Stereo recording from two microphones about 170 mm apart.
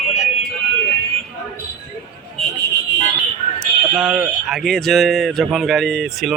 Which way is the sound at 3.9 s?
Centre (ahead or behind).